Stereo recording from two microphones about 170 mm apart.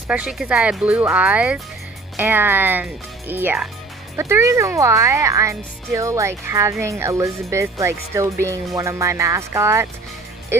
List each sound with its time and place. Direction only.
0.1 s speech: 5° right (ahead or behind)